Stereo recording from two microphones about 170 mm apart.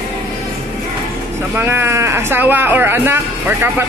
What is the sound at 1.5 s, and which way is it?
A woman's voice, 15° right (ahead or behind).